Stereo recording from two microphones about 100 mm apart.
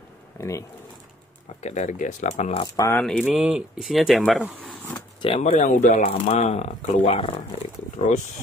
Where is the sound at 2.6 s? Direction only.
35° left (ahead or behind).